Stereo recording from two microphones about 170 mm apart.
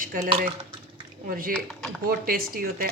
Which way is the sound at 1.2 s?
55° right (ahead or behind).